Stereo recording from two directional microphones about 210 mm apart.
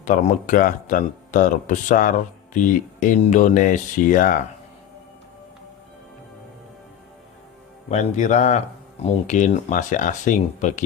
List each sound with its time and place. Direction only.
0.0 s speech: 35° left (ahead or behind)
7.9 s speech: 35° left (ahead or behind)